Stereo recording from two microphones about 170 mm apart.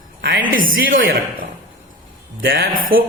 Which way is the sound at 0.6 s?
55° right (ahead or behind).